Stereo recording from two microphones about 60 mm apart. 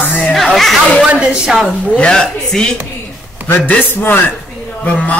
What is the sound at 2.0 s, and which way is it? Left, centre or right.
Speech, centre.